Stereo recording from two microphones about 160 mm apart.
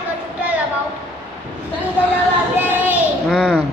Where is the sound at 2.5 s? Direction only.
10° right (ahead or behind).